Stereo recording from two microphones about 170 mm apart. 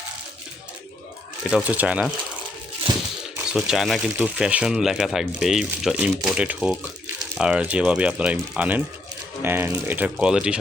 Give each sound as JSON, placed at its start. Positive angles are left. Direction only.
{"t": 1.5, "sound": "speech", "side_deg": -5}
{"t": 2.9, "sound": "a sound", "side_deg": -30}
{"t": 3.7, "sound": "speech", "side_deg": 0}